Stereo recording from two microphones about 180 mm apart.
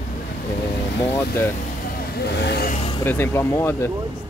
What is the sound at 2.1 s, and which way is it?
Speech, 65° left (ahead or behind).